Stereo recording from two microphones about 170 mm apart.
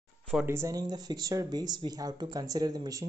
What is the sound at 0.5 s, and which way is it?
Speech, 20° right (ahead or behind).